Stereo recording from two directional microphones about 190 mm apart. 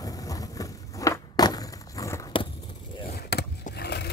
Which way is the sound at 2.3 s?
25° left (ahead or behind).